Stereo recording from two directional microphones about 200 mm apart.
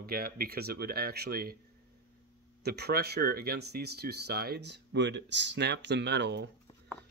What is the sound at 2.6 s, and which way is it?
Speech, 55° right (ahead or behind).